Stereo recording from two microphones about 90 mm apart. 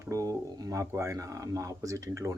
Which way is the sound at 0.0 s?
35° right (ahead or behind).